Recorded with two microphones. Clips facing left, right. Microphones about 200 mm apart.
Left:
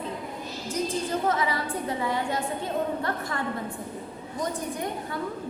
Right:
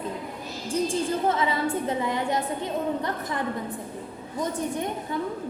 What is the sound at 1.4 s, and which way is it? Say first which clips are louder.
A woman's voice: right 3 dB; 25° right (ahead or behind).